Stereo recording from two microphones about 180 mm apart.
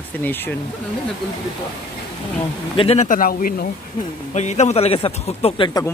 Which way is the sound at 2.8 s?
35° left (ahead or behind).